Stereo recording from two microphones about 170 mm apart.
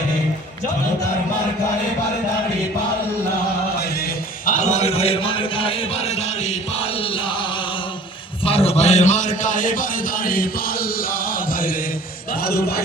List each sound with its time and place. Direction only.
3.8 s music: 60° left (ahead or behind); by 7.4 s 30° left (ahead or behind)
8.4 s a sound: 35° left (ahead or behind); by 11.8 s 55° left (ahead or behind)
12.3 s a man's voice: 65° left (ahead or behind)